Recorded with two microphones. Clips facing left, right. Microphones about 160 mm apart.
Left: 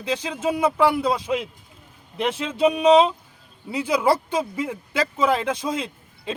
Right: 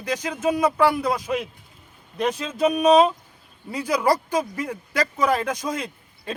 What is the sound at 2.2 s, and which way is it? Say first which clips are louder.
Speech: left 1 dB; 20° left (ahead or behind).